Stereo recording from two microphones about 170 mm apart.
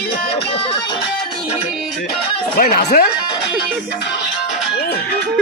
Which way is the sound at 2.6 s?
55° left (ahead or behind).